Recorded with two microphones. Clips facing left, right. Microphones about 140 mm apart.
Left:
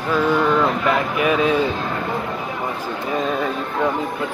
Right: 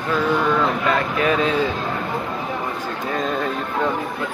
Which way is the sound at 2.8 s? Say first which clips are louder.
Left 1 dB; 10° left (ahead or behind).